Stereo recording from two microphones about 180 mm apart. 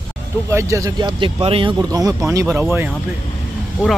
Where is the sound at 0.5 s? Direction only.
15° right (ahead or behind).